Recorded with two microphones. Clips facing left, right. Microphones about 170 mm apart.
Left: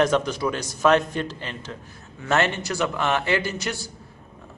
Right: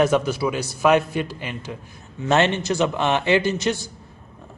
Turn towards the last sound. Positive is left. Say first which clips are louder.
# right 7 dB
turn(degrees=-20)  # may be behind; listen again after turning